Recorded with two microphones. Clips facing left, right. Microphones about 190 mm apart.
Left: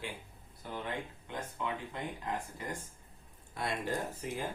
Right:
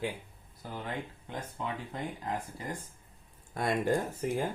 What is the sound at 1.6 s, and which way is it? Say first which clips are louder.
Speech: even; 35° right (ahead or behind).